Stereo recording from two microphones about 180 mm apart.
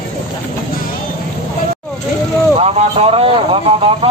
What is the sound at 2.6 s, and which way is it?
Vehicle, 35° right (ahead or behind).